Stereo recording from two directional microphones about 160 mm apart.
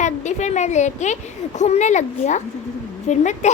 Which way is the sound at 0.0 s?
45° left (ahead or behind).